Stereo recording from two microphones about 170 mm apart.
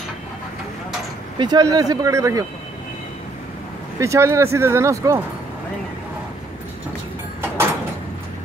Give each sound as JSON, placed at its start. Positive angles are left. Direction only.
{"t": 1.4, "sound": "speech", "side_deg": -25}
{"t": 4.0, "sound": "speech", "side_deg": -15}